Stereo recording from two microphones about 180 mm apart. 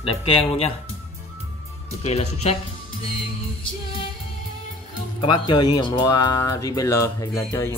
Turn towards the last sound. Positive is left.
turn(degrees=15)  # may be behind; listen again after turning